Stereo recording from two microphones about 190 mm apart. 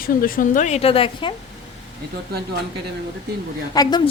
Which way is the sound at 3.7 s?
20° left (ahead or behind).